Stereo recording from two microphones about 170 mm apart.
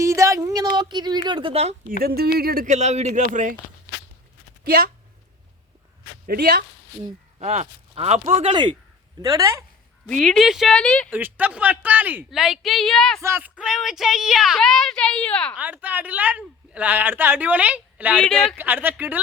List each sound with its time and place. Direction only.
0.0 s a sound: 15° right (ahead or behind)
0.8 s speech: 25° right (ahead or behind)
1.9 s speech: 65° right (ahead or behind)
2.7 s speech: 40° right (ahead or behind)
6.2 s speech: 65° right (ahead or behind)
7.0 s speech: 35° right (ahead or behind)
9.2 s speech: 20° right (ahead or behind)
10.1 s speech: 5° left (ahead or behind)
11.1 s a woman's voice: 10° right (ahead or behind)
13.2 s speech: 10° right (ahead or behind); by 15.5 s 5° left (ahead or behind)
15.5 s a woman's voice: 10° right (ahead or behind)
18.2 s speech: 5° left (ahead or behind)
18.5 s a woman's voice: 10° right (ahead or behind)